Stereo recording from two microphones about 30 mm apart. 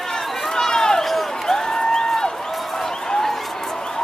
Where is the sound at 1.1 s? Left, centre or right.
Centre.